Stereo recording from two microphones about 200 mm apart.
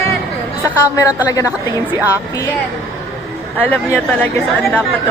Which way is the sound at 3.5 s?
10° left (ahead or behind).